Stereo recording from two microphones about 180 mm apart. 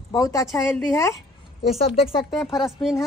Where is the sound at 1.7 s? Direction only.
35° left (ahead or behind).